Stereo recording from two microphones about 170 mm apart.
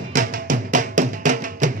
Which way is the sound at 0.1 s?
50° right (ahead or behind).